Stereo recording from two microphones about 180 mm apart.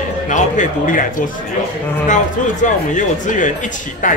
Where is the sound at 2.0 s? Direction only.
45° left (ahead or behind).